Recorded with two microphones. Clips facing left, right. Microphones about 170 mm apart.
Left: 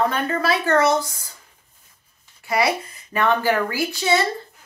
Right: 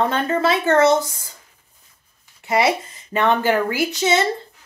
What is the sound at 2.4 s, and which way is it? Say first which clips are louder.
Speech: right 2 dB; 25° right (ahead or behind).